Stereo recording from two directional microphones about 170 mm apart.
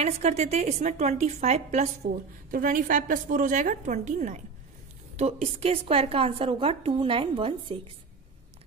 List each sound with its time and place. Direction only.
0.0 s a woman's voice: 40° right (ahead or behind)